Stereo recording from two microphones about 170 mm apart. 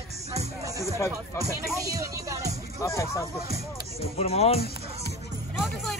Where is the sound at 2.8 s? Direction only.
15° left (ahead or behind).